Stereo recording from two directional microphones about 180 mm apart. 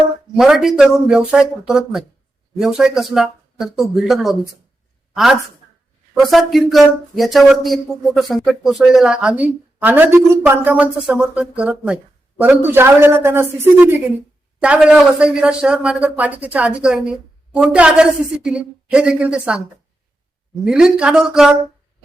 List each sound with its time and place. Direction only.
0.3 s a woman's voice: centre (ahead or behind)
20.7 s speech: 5° right (ahead or behind)